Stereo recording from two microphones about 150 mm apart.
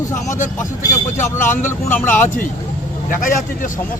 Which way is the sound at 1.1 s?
55° left (ahead or behind).